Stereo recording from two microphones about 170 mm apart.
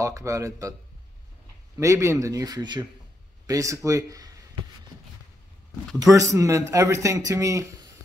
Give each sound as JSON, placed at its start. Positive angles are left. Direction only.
{"t": 0.0, "sound": "a man's voice", "side_deg": -20}
{"t": 1.8, "sound": "a man's voice", "side_deg": -15}
{"t": 5.9, "sound": "a man's voice", "side_deg": -20}